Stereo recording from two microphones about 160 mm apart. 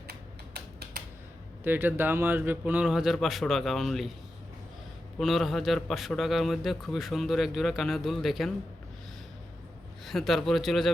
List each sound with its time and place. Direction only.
0.1 s typewriter: 80° right
1.6 s a man's voice: 10° right (ahead or behind)
5.2 s a man's voice: centre (ahead or behind)
10.1 s a man's voice: centre (ahead or behind)